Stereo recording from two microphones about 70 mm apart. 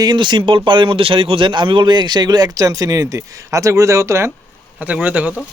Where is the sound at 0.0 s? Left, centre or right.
Right.